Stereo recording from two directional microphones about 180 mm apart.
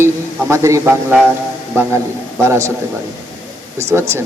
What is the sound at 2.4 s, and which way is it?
Speech, 15° right (ahead or behind).